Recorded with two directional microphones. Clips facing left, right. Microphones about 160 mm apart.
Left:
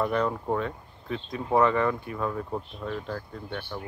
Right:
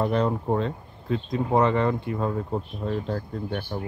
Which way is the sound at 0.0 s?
30° right (ahead or behind).